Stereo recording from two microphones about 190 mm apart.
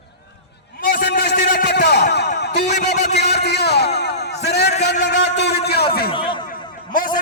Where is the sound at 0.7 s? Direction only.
50° left (ahead or behind).